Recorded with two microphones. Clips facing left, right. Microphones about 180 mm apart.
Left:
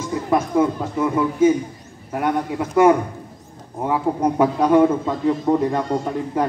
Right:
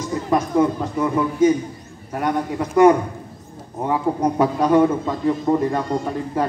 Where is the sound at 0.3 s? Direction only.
5° left (ahead or behind).